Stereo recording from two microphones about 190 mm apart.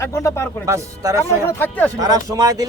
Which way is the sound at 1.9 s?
20° right (ahead or behind).